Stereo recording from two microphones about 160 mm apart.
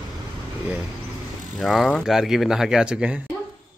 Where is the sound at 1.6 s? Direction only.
Centre (ahead or behind).